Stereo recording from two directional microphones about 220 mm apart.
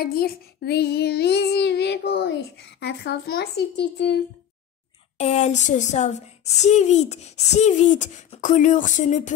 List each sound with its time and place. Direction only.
0.0 s child singing: 45° left (ahead or behind)
5.1 s a woman's voice: 30° left (ahead or behind)